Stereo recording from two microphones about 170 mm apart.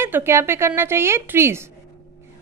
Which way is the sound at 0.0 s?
15° right (ahead or behind).